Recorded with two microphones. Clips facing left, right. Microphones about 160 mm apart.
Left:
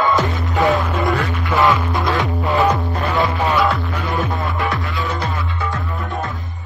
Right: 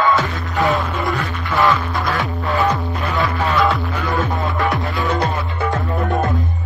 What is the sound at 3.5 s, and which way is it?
Music, centre (ahead or behind).